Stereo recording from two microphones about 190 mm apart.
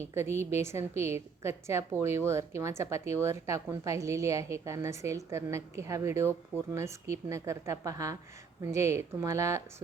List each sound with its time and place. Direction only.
0.0 s a woman's voice: 15° right (ahead or behind)